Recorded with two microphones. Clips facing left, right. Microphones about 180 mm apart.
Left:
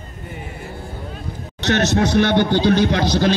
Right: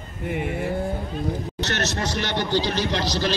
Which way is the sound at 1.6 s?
60° left (ahead or behind).